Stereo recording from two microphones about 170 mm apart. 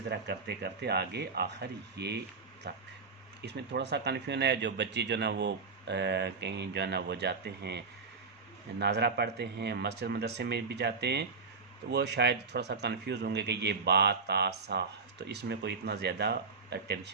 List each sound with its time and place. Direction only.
0.1 s speech: 75° right (ahead or behind)
3.4 s speech: 90° right
8.8 s speech: 85° right